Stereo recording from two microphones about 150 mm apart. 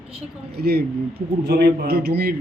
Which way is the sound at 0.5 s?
90° right.